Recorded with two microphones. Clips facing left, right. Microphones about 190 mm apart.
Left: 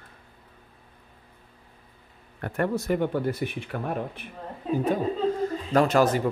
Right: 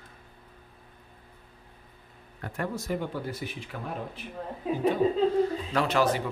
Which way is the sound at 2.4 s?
60° left (ahead or behind).